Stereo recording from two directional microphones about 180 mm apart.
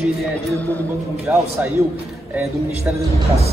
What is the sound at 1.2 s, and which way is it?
Speech, 15° right (ahead or behind).